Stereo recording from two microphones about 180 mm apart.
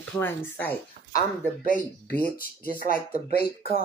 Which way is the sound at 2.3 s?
55° left (ahead or behind).